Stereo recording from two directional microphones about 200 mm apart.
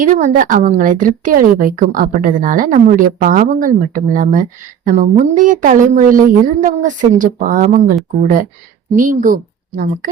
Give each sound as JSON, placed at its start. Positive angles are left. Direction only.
{"t": 0.0, "sound": "a woman's voice", "side_deg": -40}